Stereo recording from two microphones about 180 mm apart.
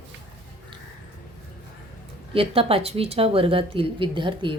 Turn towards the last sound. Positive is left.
turn(degrees=-25)  # may be behind; listen again after turning